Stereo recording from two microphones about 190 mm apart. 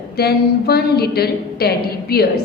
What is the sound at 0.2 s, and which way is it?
A woman's voice, 55° left (ahead or behind).